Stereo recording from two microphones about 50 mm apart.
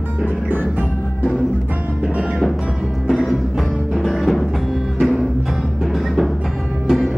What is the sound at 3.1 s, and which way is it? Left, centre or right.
Music, centre.